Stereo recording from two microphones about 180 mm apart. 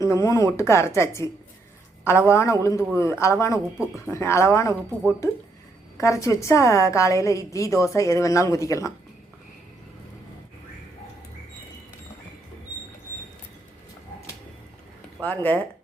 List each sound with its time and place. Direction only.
0.0 s a woman's voice: 15° left (ahead or behind)
6.0 s a woman's voice: 15° left (ahead or behind)
15.2 s a woman's voice: 10° left (ahead or behind)